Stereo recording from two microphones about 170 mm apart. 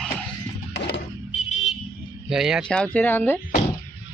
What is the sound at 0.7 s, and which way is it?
Music, 90° left.